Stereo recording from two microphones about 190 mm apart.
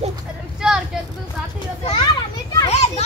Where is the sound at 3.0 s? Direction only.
35° left (ahead or behind).